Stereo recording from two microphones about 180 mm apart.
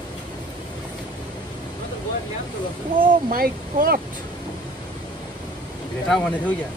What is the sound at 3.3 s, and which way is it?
Speech, 55° right (ahead or behind).